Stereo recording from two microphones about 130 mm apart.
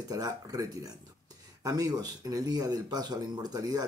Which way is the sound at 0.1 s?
25° right (ahead or behind).